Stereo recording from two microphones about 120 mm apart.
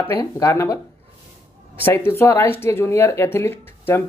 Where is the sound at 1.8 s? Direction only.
20° left (ahead or behind).